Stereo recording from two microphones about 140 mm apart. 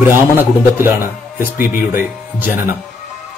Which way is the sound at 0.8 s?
15° right (ahead or behind).